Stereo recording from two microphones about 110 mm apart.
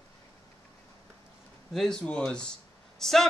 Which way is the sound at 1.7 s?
5° left (ahead or behind).